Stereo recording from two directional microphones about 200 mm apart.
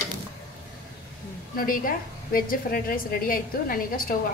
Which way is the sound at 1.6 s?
45° left (ahead or behind).